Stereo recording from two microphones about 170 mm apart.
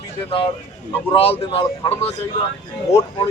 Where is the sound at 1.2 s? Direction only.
35° left (ahead or behind).